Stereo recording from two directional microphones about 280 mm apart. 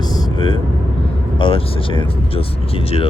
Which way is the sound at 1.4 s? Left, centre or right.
Centre.